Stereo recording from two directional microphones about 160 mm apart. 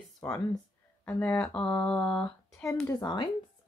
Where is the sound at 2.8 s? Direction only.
25° left (ahead or behind).